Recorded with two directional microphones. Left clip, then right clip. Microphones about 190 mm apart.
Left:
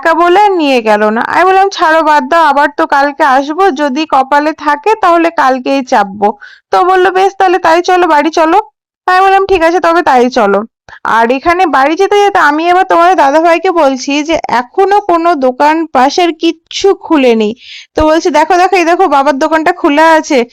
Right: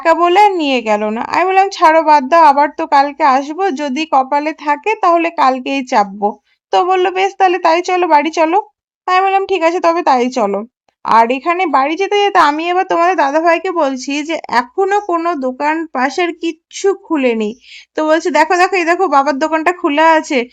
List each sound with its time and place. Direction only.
0.0 s a woman's voice: 20° left (ahead or behind)
13.3 s a woman's voice: 30° left (ahead or behind)
19.5 s speech: 20° left (ahead or behind)
19.8 s a woman's voice: 30° left (ahead or behind)